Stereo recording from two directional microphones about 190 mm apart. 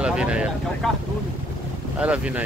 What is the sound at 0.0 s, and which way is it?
Speech, 5° right (ahead or behind).